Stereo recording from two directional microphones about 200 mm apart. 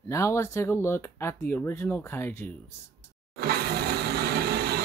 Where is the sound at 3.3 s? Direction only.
55° right (ahead or behind).